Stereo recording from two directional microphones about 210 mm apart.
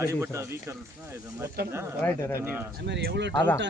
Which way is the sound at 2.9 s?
55° right (ahead or behind).